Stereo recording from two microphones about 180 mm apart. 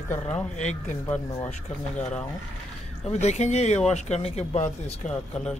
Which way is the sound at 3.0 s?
40° left (ahead or behind).